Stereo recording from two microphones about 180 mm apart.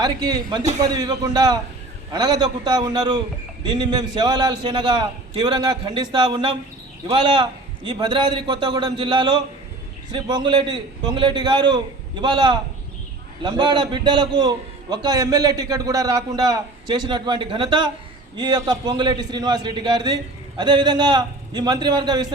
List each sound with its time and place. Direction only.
0.0 s a man's voice: 20° right (ahead or behind)